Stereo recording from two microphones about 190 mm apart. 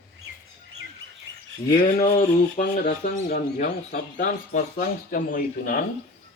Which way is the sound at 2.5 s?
40° left (ahead or behind).